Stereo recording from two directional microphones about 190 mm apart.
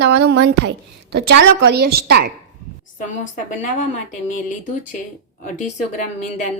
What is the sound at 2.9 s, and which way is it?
Speech, 40° left (ahead or behind).